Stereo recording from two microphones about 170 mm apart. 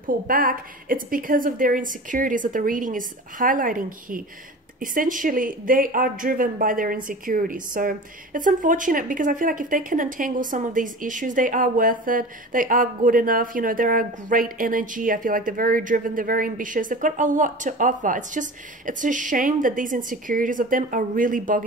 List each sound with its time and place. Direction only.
0.0 s speech: 55° right (ahead or behind)